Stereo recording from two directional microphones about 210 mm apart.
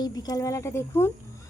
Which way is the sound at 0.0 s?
20° left (ahead or behind).